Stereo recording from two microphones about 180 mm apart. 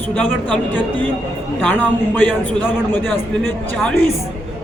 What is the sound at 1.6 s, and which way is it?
A man's voice, 10° left (ahead or behind).